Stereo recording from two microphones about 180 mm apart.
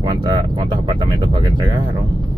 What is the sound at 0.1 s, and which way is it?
Speech, 25° right (ahead or behind).